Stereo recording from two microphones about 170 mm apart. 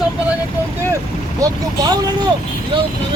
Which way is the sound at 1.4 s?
20° right (ahead or behind).